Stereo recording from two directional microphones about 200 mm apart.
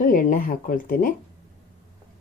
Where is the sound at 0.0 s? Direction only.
45° left (ahead or behind).